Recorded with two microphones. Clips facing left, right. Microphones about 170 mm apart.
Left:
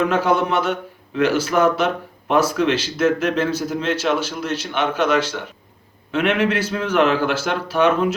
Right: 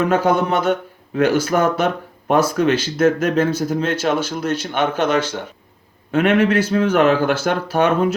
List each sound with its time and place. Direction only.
0.0 s speech: 45° right (ahead or behind)